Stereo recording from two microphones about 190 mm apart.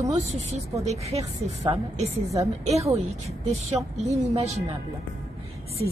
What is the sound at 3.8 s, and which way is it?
Speech, 15° right (ahead or behind).